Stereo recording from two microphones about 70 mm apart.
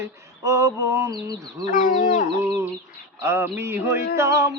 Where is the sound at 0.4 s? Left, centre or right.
Right.